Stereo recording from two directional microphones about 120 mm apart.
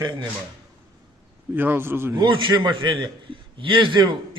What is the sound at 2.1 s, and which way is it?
A man's voice, 40° right (ahead or behind).